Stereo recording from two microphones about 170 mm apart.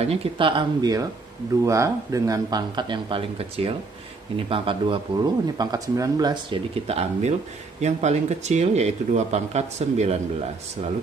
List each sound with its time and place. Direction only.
0.0 s speech: 35° right (ahead or behind)